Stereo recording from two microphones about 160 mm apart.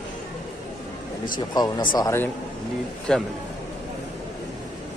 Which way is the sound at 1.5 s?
30° left (ahead or behind).